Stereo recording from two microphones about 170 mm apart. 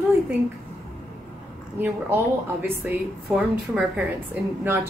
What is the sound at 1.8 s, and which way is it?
A woman's voice, 15° right (ahead or behind).